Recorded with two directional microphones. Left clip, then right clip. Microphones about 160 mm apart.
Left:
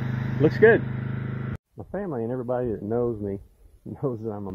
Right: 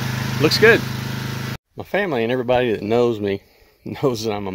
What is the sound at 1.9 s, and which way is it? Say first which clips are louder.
Speech: right 10 dB; 55° right (ahead or behind).